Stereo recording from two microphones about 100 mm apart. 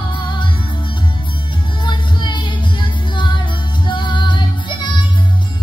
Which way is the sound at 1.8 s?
50° left (ahead or behind).